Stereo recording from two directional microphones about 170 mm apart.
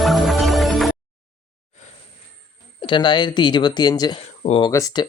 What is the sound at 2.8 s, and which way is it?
Speech, 30° left (ahead or behind).